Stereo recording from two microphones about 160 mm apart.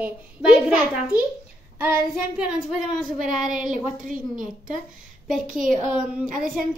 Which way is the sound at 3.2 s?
55° right (ahead or behind).